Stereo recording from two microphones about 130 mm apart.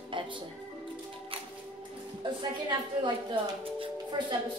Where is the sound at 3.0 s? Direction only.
40° right (ahead or behind).